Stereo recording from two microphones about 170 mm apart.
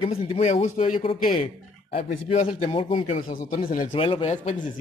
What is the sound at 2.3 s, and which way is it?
Speech, 35° left (ahead or behind).